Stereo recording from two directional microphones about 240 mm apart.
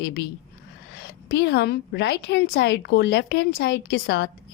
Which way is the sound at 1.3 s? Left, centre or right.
Left.